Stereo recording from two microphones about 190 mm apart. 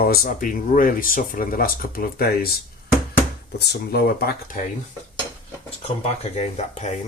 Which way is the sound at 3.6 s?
60° left (ahead or behind).